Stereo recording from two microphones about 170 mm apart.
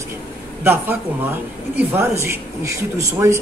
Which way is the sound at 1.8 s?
15° right (ahead or behind).